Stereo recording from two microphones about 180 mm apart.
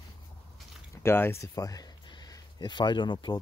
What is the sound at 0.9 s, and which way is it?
Speech, 15° left (ahead or behind).